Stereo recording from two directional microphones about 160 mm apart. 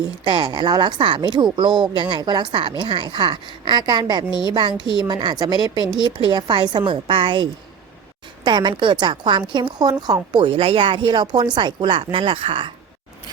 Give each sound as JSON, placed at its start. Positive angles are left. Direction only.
{"t": 0.3, "sound": "a woman's voice", "side_deg": -25}
{"t": 8.4, "sound": "a woman's voice", "side_deg": -30}